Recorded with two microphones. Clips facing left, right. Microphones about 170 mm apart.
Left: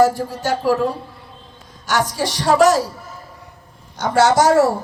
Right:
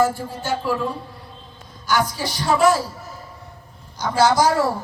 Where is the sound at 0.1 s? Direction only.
75° left (ahead or behind).